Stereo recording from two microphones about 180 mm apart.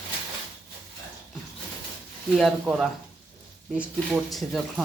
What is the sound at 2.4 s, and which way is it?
Speech, centre (ahead or behind).